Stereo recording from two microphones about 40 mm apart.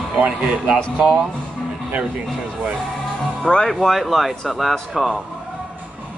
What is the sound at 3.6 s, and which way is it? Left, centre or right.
Speech, centre.